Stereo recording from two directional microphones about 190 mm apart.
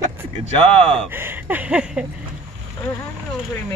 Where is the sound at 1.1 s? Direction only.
10° right (ahead or behind).